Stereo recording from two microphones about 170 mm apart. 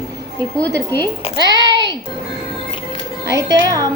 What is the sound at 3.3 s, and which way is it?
Speech, 20° right (ahead or behind).